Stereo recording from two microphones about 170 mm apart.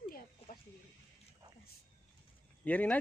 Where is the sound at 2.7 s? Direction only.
10° left (ahead or behind).